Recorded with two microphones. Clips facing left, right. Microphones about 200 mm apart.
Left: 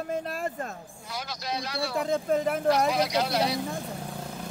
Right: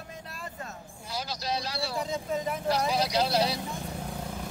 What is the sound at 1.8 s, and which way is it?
Speech, 55° left (ahead or behind).